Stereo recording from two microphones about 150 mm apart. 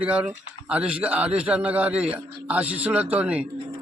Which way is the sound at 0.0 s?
10° right (ahead or behind).